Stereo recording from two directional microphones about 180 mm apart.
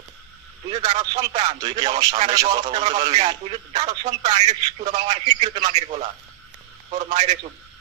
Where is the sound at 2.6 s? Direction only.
35° right (ahead or behind).